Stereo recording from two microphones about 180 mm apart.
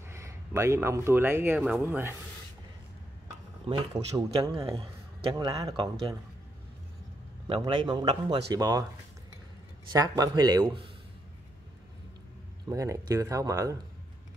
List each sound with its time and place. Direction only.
0.1 s speech: 15° right (ahead or behind)
3.6 s speech: 30° right (ahead or behind)
4.1 s speech: 20° right (ahead or behind)
7.4 s speech: 25° right (ahead or behind)
9.9 s speech: 20° right (ahead or behind)
12.6 s speech: 15° right (ahead or behind)